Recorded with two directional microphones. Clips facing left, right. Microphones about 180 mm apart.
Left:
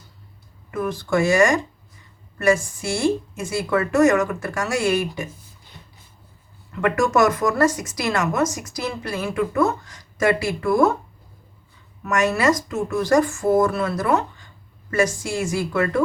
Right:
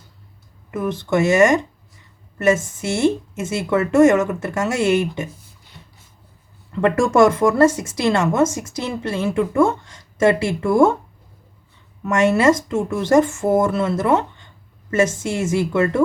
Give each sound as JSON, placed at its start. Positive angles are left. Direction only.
{"t": 0.7, "sound": "speech", "side_deg": -20}
{"t": 6.7, "sound": "speech", "side_deg": -30}
{"t": 12.0, "sound": "speech", "side_deg": -25}